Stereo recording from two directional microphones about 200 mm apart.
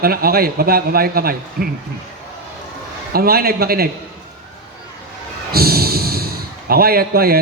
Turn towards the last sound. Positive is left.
turn(degrees=-50)  # may be behind; listen again after turning